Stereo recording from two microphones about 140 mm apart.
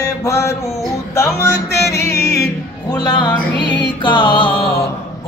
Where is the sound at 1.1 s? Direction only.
20° left (ahead or behind).